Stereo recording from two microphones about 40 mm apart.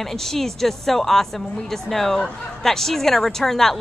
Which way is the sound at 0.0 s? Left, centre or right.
Centre.